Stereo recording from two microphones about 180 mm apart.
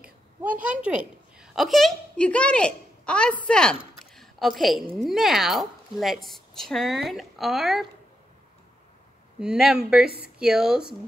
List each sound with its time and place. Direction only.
0.4 s a child's voice: 10° right (ahead or behind)
9.4 s speech: 5° right (ahead or behind)